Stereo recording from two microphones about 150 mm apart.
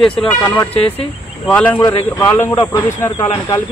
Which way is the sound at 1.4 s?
10° left (ahead or behind).